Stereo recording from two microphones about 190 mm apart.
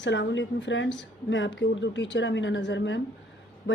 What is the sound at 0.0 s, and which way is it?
Speech, 70° left (ahead or behind).